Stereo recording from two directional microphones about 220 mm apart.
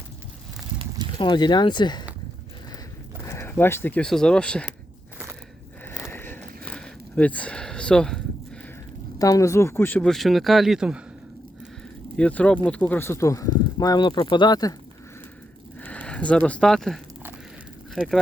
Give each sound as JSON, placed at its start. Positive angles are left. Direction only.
{"t": 1.2, "sound": "speech", "side_deg": 20}
{"t": 3.2, "sound": "speech", "side_deg": 10}
{"t": 6.0, "sound": "a sound", "side_deg": 10}
{"t": 9.1, "sound": "speech", "side_deg": 15}
{"t": 12.1, "sound": "speech", "side_deg": 5}
{"t": 15.8, "sound": "speech", "side_deg": 5}